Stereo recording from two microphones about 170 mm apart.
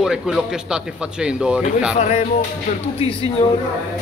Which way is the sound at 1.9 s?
40° left (ahead or behind).